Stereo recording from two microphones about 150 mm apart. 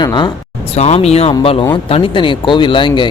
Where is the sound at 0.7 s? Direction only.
45° left (ahead or behind).